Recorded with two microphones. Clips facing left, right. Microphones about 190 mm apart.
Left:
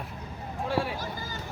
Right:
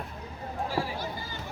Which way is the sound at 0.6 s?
70° left (ahead or behind).